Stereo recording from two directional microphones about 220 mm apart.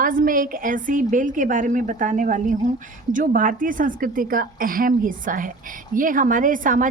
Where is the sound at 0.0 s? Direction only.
40° right (ahead or behind).